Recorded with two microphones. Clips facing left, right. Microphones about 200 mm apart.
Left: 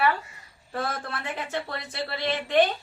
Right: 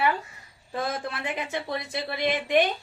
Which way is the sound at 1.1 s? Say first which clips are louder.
Right 1 dB; 15° right (ahead or behind).